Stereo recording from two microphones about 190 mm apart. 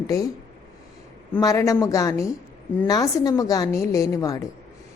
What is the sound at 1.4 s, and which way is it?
A woman's voice, 20° left (ahead or behind).